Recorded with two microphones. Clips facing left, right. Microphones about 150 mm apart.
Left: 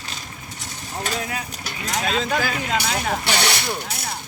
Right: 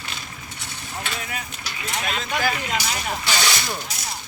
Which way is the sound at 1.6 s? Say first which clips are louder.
Left 3 dB; 45° left (ahead or behind).